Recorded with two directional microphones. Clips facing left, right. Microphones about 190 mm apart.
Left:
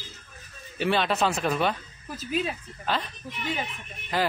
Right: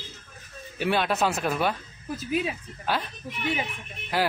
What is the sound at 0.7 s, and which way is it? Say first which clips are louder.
Speech: even; 10° right (ahead or behind).